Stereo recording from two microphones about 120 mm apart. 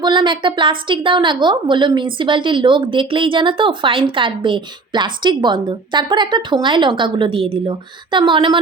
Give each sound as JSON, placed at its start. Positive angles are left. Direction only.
{"t": 0.0, "sound": "a woman's voice", "side_deg": -40}